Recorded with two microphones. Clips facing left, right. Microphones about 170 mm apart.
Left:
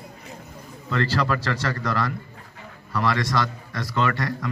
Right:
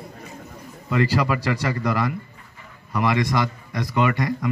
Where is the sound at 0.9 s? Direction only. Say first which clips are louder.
Right 3 dB; 10° right (ahead or behind).